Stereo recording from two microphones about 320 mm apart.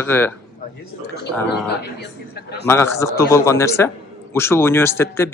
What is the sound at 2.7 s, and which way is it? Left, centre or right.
Speech, centre.